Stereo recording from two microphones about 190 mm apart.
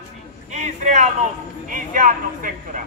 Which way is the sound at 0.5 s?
40° right (ahead or behind).